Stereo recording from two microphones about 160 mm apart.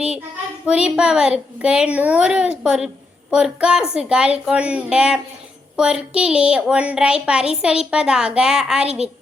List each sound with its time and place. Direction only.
0.6 s a woman's voice: 5° right (ahead or behind)